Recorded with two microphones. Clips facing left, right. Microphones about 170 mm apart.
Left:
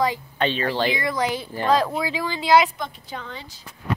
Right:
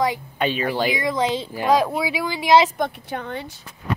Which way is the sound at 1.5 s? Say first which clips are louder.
Right 1 dB; 10° right (ahead or behind).